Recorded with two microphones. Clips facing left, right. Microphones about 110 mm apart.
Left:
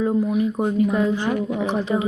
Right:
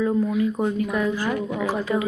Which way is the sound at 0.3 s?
20° left (ahead or behind).